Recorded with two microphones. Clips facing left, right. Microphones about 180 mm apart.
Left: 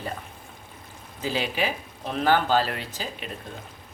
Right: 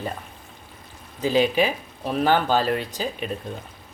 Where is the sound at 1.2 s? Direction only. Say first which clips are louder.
Right 7 dB; 20° right (ahead or behind).